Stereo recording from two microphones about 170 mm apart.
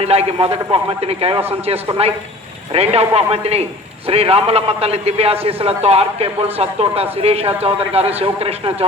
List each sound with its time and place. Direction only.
0.0 s a man's voice: 35° right (ahead or behind)